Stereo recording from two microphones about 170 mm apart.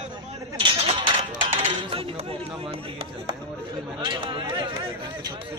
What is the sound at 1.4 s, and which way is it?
Speech, 35° right (ahead or behind).